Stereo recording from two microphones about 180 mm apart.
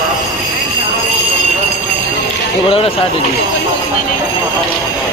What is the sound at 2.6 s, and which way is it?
Speech, 30° left (ahead or behind).